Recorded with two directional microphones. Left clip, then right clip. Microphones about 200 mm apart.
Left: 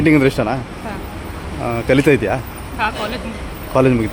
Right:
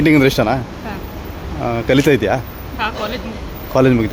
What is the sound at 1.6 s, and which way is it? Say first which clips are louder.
Speech: even; 5° right (ahead or behind).